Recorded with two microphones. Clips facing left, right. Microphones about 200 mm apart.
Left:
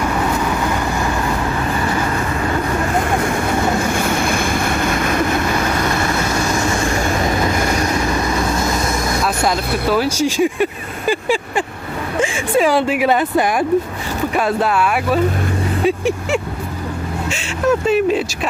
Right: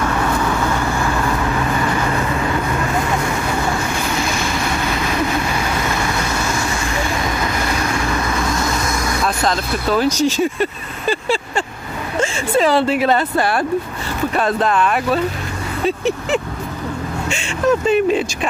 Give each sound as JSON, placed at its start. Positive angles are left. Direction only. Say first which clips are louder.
{"t": 4.2, "sound": "vehicle", "louder": "left 3 dB", "side_deg": 55}
{"t": 9.2, "sound": "speech", "louder": "right 1 dB", "side_deg": 10}